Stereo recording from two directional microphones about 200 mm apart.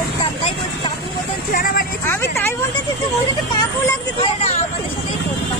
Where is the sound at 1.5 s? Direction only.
45° left (ahead or behind).